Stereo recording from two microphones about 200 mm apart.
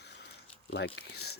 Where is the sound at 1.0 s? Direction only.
55° left (ahead or behind).